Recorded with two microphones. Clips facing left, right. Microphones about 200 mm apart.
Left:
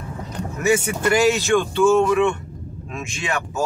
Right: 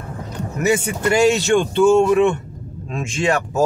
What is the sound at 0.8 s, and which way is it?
Speech, 25° right (ahead or behind).